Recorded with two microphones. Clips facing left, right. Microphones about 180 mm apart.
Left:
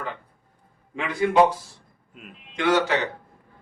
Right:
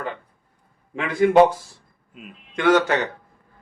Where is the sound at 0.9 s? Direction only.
50° right (ahead or behind).